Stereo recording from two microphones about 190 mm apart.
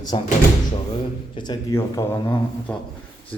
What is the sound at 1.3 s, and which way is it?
A man's voice, 25° left (ahead or behind).